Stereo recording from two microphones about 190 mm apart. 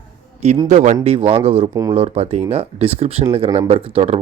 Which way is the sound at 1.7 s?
15° right (ahead or behind).